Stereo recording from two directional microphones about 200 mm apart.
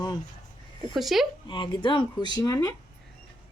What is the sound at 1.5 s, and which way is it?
Speech, 25° left (ahead or behind).